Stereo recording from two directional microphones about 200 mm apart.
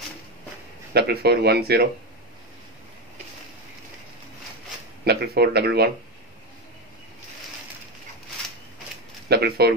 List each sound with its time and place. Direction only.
0.9 s speech: 55° right (ahead or behind)
5.0 s speech: 50° right (ahead or behind)
9.3 s speech: 50° right (ahead or behind)